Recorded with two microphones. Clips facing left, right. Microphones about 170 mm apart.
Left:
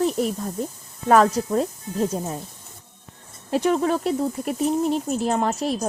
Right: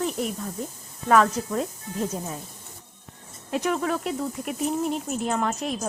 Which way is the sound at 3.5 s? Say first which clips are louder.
Left 5 dB; 30° left (ahead or behind).